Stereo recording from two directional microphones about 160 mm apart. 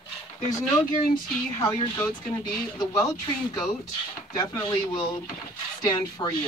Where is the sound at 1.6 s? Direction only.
20° left (ahead or behind).